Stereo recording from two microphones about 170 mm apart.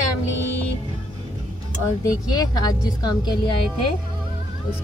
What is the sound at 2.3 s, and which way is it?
A woman's voice, 25° left (ahead or behind).